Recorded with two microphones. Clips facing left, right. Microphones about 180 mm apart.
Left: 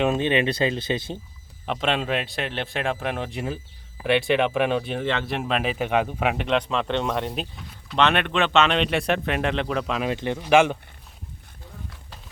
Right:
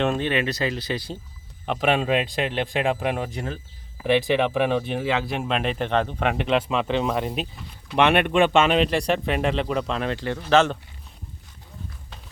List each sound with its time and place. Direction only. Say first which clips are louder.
0.0 s speech: left 2 dB; 15° left (ahead or behind)
1.6 s speech: right 3 dB; 5° right (ahead or behind)
7.9 s speech: right 3 dB; 10° right (ahead or behind); by 10.8 s 10° left (ahead or behind)